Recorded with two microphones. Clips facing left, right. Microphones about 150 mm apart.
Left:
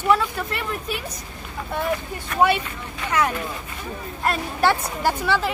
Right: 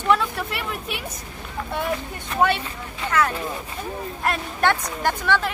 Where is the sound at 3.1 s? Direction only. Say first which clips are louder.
Even; 15° left (ahead or behind).